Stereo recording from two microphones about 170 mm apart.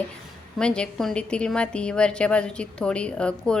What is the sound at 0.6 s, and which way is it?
A woman's voice, 5° left (ahead or behind).